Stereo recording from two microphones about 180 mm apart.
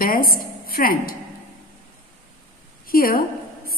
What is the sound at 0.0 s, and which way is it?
A woman's voice, 55° left (ahead or behind).